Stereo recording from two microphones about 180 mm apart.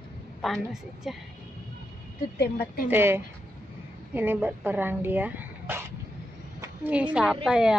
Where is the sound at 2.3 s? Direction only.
60° left (ahead or behind).